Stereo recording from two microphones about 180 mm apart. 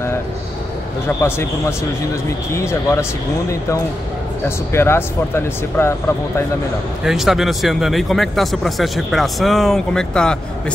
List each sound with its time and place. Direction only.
1.0 s speech: 15° left (ahead or behind)
7.1 s speech: centre (ahead or behind)